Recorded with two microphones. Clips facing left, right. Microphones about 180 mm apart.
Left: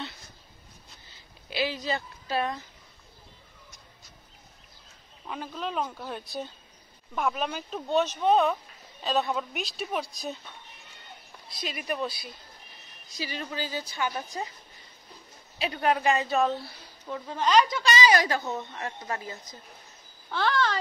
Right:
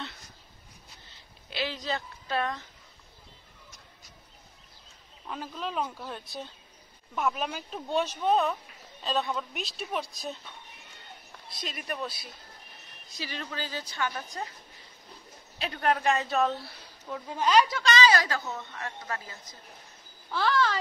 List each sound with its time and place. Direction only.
1.5 s a woman's voice: 5° left (ahead or behind)
5.3 s a woman's voice: 5° left (ahead or behind)
11.5 s a woman's voice: 5° left (ahead or behind)
15.6 s a woman's voice: 5° left (ahead or behind)
17.8 s speech: 10° left (ahead or behind)
20.2 s a woman's voice: centre (ahead or behind)